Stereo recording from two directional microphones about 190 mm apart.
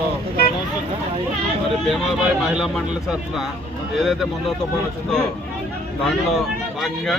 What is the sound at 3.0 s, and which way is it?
Speech, centre (ahead or behind).